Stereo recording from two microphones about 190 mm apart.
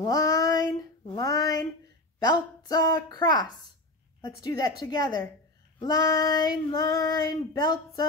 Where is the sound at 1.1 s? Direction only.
20° left (ahead or behind).